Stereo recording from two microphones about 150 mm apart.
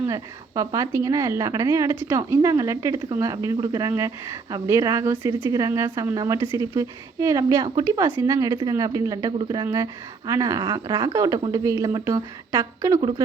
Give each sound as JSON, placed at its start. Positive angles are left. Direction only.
{"t": 0.1, "sound": "a woman's voice", "side_deg": -20}